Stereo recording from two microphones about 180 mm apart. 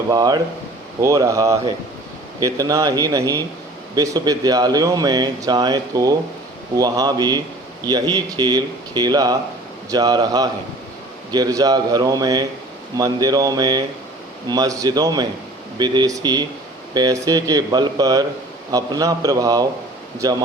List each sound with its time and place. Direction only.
0.1 s speech: 20° right (ahead or behind)